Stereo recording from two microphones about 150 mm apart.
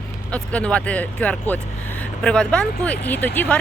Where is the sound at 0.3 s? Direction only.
10° left (ahead or behind).